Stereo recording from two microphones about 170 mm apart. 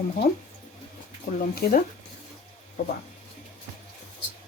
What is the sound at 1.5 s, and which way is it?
Speech, 55° left (ahead or behind).